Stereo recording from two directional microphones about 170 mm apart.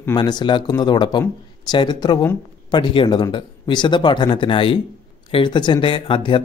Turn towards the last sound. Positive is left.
turn(degrees=30)  # may be behind; listen again after turning